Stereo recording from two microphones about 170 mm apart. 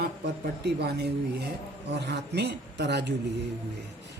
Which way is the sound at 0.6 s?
75° right (ahead or behind).